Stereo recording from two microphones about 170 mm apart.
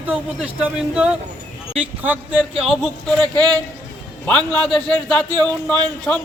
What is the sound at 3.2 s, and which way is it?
Speech, 10° left (ahead or behind).